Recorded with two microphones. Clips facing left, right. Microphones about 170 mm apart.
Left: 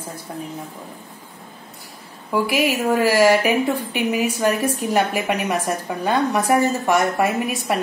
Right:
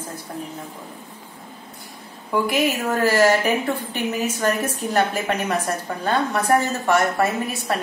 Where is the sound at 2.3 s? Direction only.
5° left (ahead or behind).